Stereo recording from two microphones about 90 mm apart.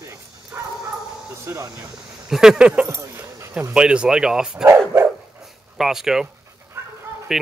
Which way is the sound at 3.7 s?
10° right (ahead or behind).